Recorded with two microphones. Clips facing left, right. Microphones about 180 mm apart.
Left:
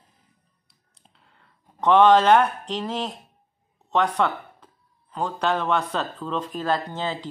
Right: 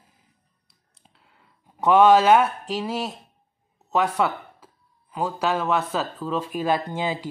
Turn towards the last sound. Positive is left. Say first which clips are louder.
# right 2 dB
turn(degrees=-10)  # may be behind; listen again after turning